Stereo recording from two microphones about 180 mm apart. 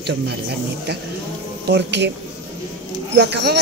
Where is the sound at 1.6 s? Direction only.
70° right (ahead or behind).